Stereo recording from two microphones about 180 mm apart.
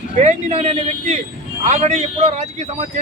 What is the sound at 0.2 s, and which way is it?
Speech, 40° right (ahead or behind).